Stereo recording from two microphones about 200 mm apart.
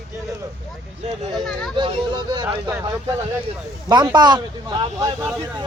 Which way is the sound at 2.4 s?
10° right (ahead or behind).